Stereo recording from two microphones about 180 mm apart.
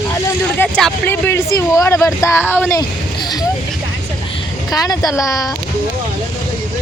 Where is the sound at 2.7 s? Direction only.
20° left (ahead or behind).